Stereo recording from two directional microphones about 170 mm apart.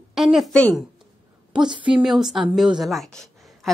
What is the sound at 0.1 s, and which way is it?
Speech, centre (ahead or behind).